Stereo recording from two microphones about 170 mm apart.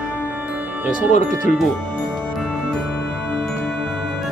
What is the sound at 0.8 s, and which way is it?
Speech, 50° left (ahead or behind).